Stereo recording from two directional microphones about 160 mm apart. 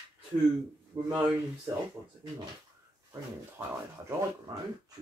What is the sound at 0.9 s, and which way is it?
Speech, 20° right (ahead or behind).